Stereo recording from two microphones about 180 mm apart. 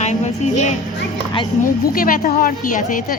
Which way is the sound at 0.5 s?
40° left (ahead or behind).